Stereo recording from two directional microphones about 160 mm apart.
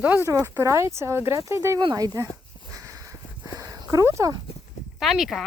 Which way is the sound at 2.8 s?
20° right (ahead or behind).